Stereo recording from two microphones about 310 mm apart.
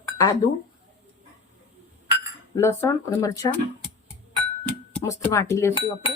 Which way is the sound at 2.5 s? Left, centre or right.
Centre.